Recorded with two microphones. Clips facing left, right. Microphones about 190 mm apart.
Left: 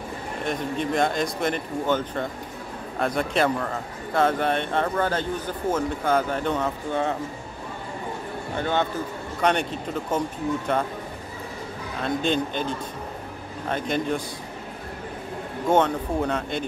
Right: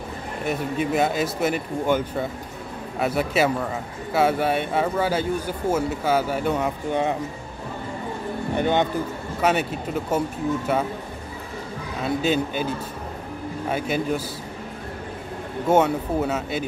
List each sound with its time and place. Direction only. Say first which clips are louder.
0.5 s speech: right 2 dB; 5° right (ahead or behind)
8.5 s speech: right 3 dB; 15° right (ahead or behind)
9.4 s speech: right 1 dB; 5° right (ahead or behind)
12.0 s speech: right 2 dB; 5° right (ahead or behind)
15.7 s speech: right 2 dB; 5° right (ahead or behind)